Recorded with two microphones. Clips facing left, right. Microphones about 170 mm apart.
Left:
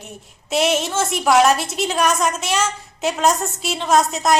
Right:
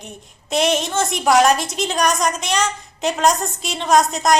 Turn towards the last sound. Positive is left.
turn(degrees=5)  # may be behind; listen again after turning